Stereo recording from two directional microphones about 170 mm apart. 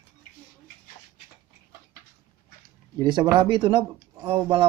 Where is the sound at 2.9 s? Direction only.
25° right (ahead or behind).